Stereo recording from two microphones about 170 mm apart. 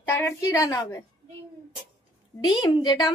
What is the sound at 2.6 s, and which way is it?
Speech, 25° left (ahead or behind).